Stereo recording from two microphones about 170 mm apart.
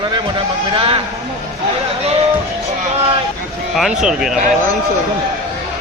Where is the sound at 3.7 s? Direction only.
5° right (ahead or behind).